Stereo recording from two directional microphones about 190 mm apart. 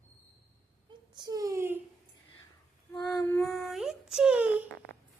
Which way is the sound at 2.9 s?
15° left (ahead or behind).